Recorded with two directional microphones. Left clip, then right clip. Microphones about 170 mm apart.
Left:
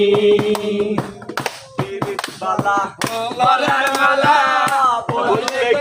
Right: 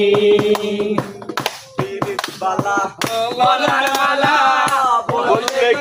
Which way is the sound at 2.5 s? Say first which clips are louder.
Left 2 dB; 5° left (ahead or behind).